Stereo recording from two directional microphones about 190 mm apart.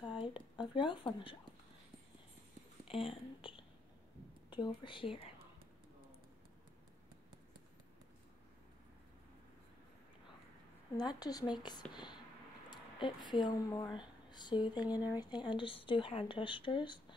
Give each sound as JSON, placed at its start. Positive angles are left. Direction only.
{"t": 0.0, "sound": "speech", "side_deg": 25}
{"t": 2.9, "sound": "speech", "side_deg": 30}
{"t": 11.0, "sound": "speech", "side_deg": 20}